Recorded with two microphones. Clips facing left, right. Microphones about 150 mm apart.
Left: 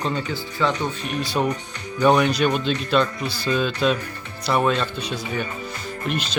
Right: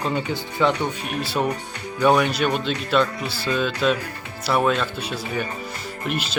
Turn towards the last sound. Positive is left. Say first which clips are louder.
# left 1 dB
turn(degrees=-5)  # may be behind; listen again after turning